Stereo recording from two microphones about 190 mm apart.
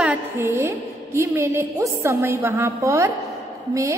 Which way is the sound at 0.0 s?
10° right (ahead or behind).